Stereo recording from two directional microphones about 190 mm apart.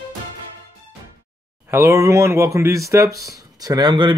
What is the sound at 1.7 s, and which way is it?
Speech, 15° right (ahead or behind).